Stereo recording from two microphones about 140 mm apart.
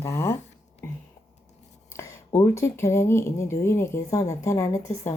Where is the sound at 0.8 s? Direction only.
15° left (ahead or behind).